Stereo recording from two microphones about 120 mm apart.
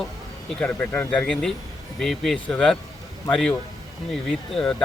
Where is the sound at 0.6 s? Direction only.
15° left (ahead or behind).